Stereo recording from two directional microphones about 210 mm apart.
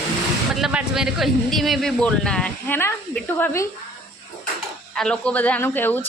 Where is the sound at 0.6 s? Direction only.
5° right (ahead or behind); by 3.7 s 10° left (ahead or behind).